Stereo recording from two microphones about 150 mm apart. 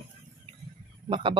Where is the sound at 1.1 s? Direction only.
35° right (ahead or behind).